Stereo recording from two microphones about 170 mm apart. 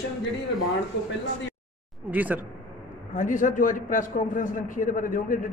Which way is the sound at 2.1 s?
10° right (ahead or behind).